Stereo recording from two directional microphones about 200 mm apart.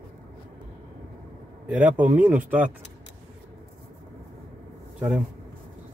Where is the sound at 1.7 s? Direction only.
5° right (ahead or behind).